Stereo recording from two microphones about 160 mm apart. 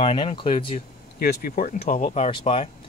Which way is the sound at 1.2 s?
65° left (ahead or behind).